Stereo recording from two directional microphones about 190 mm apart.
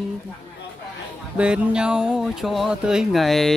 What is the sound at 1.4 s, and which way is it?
Speech, 5° right (ahead or behind).